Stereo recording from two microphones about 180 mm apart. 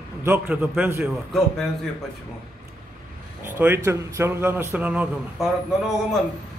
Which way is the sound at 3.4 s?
10° right (ahead or behind).